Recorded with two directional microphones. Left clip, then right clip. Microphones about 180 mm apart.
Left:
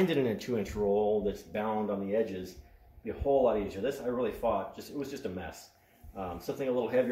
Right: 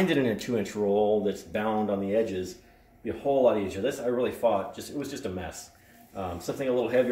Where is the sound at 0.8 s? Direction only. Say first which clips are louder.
Right 4 dB; 10° left (ahead or behind).